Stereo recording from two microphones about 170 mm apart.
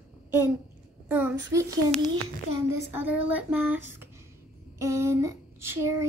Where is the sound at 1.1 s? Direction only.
10° right (ahead or behind).